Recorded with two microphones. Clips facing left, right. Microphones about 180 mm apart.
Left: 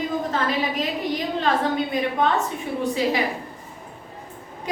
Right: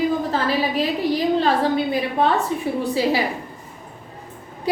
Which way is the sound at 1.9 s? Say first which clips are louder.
Right 2 dB; 35° right (ahead or behind).